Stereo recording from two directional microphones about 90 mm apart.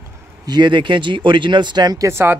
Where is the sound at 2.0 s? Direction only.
30° right (ahead or behind).